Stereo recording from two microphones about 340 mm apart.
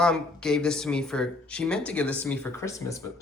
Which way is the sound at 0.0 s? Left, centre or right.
Centre.